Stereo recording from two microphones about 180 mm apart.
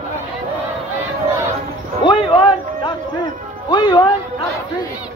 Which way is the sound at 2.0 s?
30° left (ahead or behind).